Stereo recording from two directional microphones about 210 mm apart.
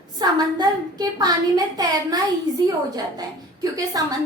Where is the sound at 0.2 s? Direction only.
20° right (ahead or behind).